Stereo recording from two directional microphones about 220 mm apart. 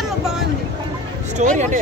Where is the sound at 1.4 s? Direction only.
35° right (ahead or behind).